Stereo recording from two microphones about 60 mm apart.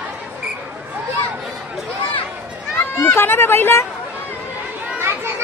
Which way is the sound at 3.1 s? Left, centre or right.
Left.